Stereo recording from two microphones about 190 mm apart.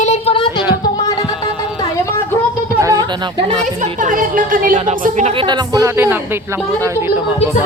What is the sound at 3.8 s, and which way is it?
Speech, 45° right (ahead or behind).